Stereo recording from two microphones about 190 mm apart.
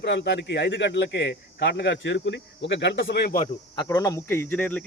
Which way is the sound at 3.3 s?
30° left (ahead or behind).